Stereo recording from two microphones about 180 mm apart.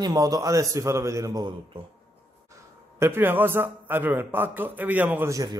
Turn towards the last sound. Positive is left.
turn(degrees=-20)  # may be behind; listen again after turning